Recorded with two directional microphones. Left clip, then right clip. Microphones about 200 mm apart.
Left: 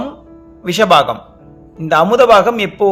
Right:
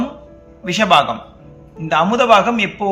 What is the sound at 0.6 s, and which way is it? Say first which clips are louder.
A man's voice: left 3 dB; 55° left (ahead or behind).